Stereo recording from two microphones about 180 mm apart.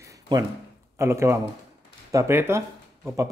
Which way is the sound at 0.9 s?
15° right (ahead or behind).